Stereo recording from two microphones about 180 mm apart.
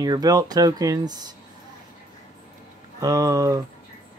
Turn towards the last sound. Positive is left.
turn(degrees=-20)  # may be behind; listen again after turning